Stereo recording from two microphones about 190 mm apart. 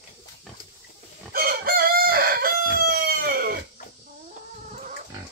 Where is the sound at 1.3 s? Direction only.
55° right (ahead or behind).